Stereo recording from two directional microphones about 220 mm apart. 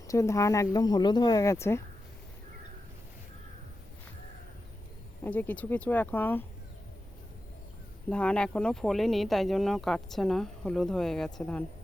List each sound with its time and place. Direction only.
0.1 s speech: 15° left (ahead or behind)
5.2 s speech: 10° left (ahead or behind)
8.1 s speech: 5° left (ahead or behind)